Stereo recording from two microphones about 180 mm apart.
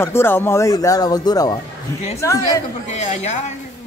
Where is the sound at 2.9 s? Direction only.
40° left (ahead or behind).